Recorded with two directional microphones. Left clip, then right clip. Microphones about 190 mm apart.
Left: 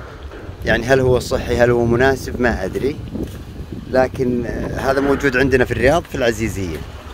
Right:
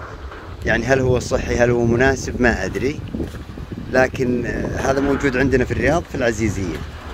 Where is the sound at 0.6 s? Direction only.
20° left (ahead or behind).